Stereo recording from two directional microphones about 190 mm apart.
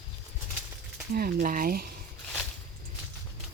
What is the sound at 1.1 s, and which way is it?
Speech, 50° right (ahead or behind).